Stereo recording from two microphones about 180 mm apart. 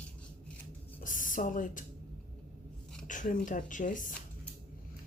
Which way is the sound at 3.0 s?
45° left (ahead or behind).